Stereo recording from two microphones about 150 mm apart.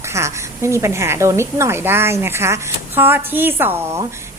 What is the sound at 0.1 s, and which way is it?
A woman's voice, 20° right (ahead or behind).